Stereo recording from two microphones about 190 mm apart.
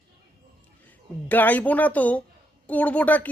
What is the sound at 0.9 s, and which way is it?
Speech, 10° left (ahead or behind).